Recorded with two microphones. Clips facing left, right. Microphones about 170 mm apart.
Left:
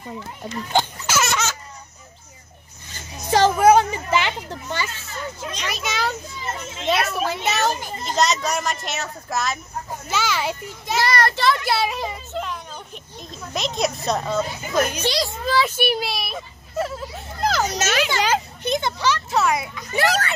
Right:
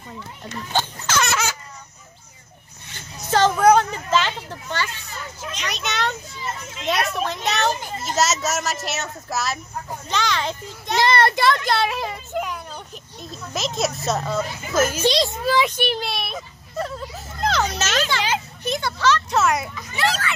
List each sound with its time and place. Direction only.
0.4 s a sound: 10° left (ahead or behind)
1.3 s chicken: 10° right (ahead or behind)
3.3 s speech: 10° left (ahead or behind)
5.7 s a woman's voice: centre (ahead or behind)
11.0 s a child's voice: 25° right (ahead or behind)
11.4 s a woman's voice: 5° left (ahead or behind)
12.3 s a child's voice: 10° right (ahead or behind)
15.0 s a child's voice: 20° right (ahead or behind)
15.7 s a child's voice: 10° left (ahead or behind)
18.1 s a sound: 45° left (ahead or behind)
18.6 s a sound: 20° left (ahead or behind)
19.3 s a woman's voice: centre (ahead or behind)
19.9 s speech: 45° left (ahead or behind)